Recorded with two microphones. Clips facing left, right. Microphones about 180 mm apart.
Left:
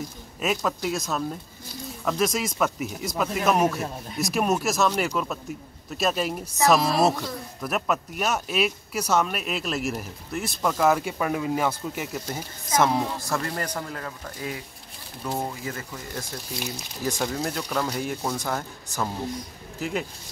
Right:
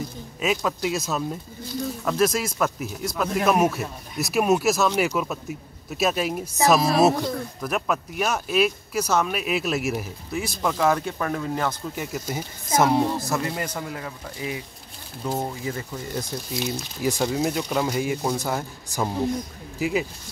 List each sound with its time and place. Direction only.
0.4 s speech: centre (ahead or behind)
12.3 s speech: 10° right (ahead or behind)
15.2 s speech: 5° right (ahead or behind)
15.6 s speech: 20° right (ahead or behind)
17.0 s speech: 10° right (ahead or behind)